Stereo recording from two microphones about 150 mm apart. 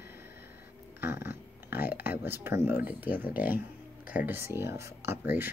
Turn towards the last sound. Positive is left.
turn(degrees=-15)  # may be behind; listen again after turning